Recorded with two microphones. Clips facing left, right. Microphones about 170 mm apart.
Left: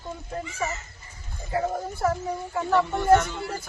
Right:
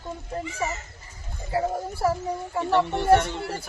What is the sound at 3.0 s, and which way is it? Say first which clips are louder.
Speech: left 1 dB; 30° right (ahead or behind).